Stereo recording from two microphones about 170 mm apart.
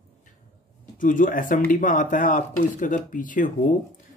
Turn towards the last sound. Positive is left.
turn(degrees=50)  # may be behind; listen again after turning